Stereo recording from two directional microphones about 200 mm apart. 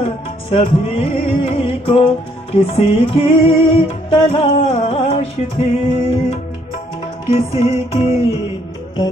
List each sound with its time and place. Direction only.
0.5 s music: 30° left (ahead or behind)